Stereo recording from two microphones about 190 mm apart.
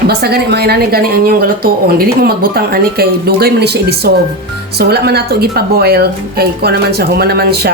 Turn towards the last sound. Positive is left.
turn(degrees=-55)  # may be behind; listen again after turning